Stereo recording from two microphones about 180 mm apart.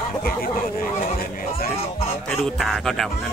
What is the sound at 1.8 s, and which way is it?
Music, 35° left (ahead or behind).